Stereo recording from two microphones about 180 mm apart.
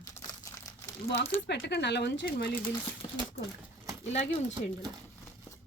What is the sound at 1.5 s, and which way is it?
Speech, 70° left (ahead or behind).